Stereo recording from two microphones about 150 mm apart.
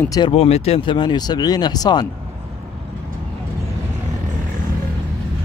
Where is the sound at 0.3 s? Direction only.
45° left (ahead or behind); by 2.0 s 25° left (ahead or behind).